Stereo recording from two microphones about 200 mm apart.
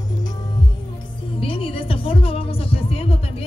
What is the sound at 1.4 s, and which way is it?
Music, 25° left (ahead or behind).